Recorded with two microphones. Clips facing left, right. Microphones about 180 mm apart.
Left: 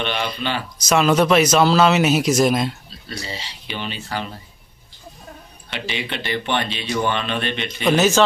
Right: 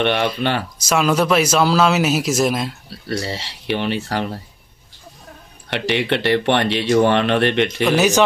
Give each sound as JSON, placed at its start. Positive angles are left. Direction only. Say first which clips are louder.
{"t": 0.0, "sound": "speech", "louder": "right 6 dB", "side_deg": -60}
{"t": 0.8, "sound": "speech", "louder": "left 1 dB", "side_deg": -5}
{"t": 2.9, "sound": "speech", "louder": "right 8 dB", "side_deg": -70}
{"t": 5.7, "sound": "speech", "louder": "right 9 dB", "side_deg": -65}
{"t": 7.8, "sound": "speech", "louder": "left 1 dB", "side_deg": -10}